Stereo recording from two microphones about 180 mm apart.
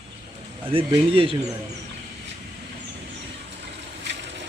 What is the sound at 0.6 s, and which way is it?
Speech, 30° right (ahead or behind).